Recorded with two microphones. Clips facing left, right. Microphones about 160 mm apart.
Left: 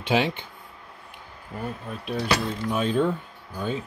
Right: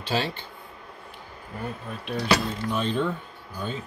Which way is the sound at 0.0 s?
15° left (ahead or behind).